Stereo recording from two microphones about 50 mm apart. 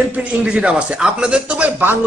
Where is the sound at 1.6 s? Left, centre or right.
Right.